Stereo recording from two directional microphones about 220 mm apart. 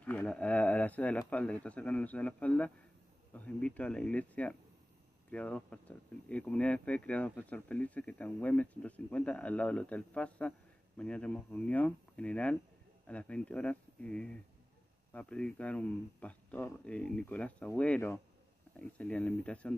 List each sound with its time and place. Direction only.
0.0 s speech: 5° left (ahead or behind)